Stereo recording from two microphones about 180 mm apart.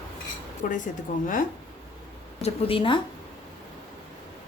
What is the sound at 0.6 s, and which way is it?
Speech, 45° left (ahead or behind).